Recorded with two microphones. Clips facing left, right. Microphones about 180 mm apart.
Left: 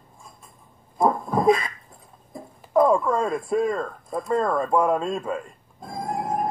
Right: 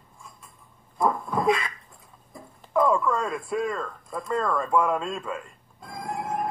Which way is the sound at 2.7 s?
40° left (ahead or behind).